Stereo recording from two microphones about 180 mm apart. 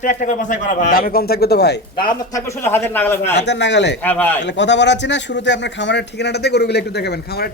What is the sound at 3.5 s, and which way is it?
Speech, 75° left (ahead or behind).